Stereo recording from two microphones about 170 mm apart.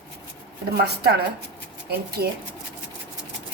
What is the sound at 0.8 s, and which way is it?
Speech, 70° right (ahead or behind).